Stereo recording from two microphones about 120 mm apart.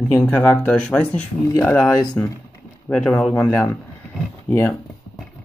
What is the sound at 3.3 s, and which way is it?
Speech, 25° left (ahead or behind).